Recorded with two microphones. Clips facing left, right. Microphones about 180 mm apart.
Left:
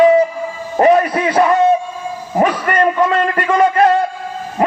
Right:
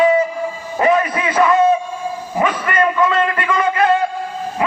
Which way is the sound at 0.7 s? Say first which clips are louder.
Left 4 dB; 40° left (ahead or behind).